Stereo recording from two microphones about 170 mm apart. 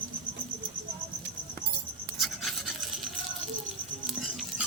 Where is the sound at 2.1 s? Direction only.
Centre (ahead or behind).